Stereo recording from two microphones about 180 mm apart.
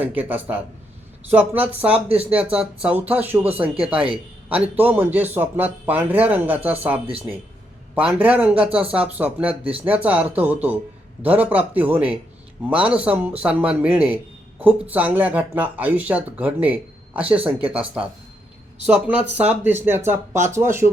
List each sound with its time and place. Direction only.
0.0 s speech: 10° right (ahead or behind)
9.6 s speech: 30° right (ahead or behind)
9.9 s speech: 10° right (ahead or behind)